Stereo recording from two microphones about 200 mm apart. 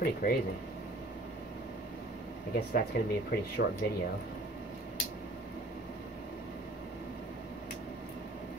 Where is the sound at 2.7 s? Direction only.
50° left (ahead or behind).